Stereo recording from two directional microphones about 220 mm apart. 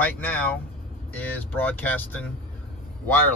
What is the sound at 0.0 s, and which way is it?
Speech, 5° left (ahead or behind).